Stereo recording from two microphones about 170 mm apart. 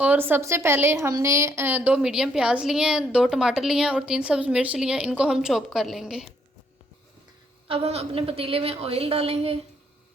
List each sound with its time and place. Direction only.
0.0 s a woman's voice: 10° right (ahead or behind)
7.7 s a woman's voice: 35° right (ahead or behind)